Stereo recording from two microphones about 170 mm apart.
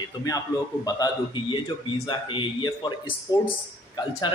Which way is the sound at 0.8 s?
20° left (ahead or behind).